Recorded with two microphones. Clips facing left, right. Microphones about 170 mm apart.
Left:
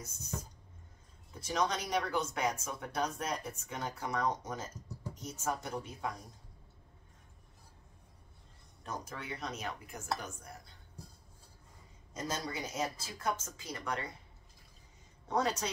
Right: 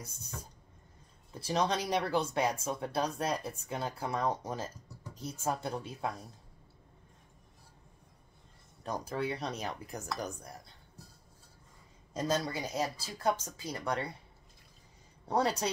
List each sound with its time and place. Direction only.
1.4 s speech: 30° right (ahead or behind)
8.8 s speech: 35° right (ahead or behind)
12.1 s speech: 30° right (ahead or behind)
15.2 s speech: 35° right (ahead or behind)